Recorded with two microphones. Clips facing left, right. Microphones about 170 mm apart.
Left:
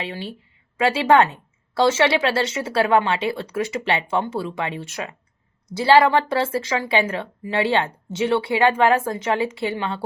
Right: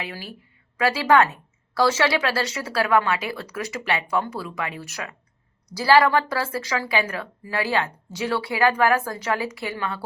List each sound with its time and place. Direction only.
0.0 s a woman's voice: 25° left (ahead or behind)